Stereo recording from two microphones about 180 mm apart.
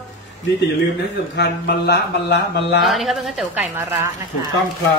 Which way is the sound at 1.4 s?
65° left (ahead or behind).